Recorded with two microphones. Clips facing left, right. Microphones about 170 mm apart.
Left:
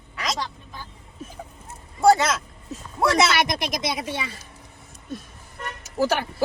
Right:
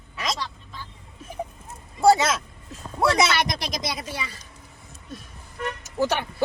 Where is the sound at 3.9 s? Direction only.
25° left (ahead or behind).